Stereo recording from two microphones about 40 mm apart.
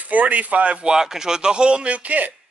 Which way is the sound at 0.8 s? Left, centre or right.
Centre.